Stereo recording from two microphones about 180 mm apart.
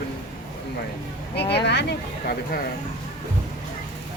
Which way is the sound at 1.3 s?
70° left (ahead or behind).